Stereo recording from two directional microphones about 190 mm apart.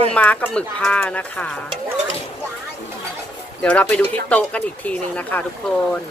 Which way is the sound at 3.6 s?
5° left (ahead or behind).